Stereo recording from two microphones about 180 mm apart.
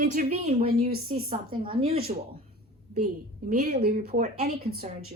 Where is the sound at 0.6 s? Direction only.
60° right (ahead or behind).